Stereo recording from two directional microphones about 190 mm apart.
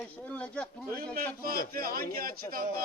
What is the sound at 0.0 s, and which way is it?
Speech, 5° left (ahead or behind).